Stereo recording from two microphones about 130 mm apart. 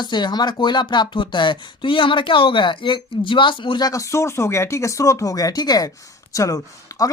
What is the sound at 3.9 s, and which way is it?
Speech, 25° left (ahead or behind).